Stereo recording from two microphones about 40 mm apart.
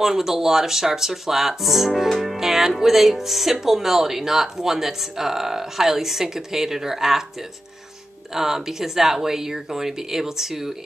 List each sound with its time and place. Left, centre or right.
0.0 s speech: centre
2.0 s music: centre
3.6 s speech: centre
8.4 s speech: centre